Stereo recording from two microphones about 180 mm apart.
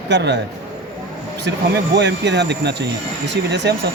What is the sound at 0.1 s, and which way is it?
Speech, 75° right (ahead or behind).